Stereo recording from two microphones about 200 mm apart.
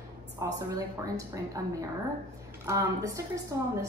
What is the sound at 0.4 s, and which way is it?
A woman's voice, 20° right (ahead or behind).